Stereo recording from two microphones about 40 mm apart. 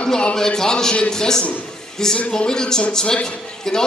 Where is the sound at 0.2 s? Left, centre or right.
Left.